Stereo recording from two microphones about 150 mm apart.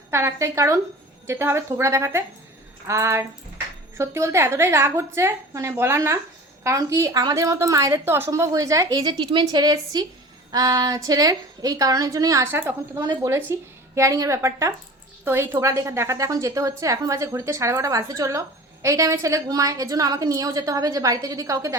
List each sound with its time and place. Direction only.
0.1 s a woman's voice: 15° right (ahead or behind)